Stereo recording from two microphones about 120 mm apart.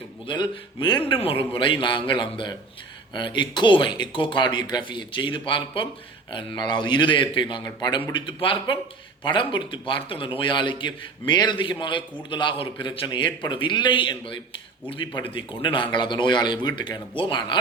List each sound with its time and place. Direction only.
0.3 s a man's voice: 40° left (ahead or behind)
8.1 s a man's voice: 45° left (ahead or behind)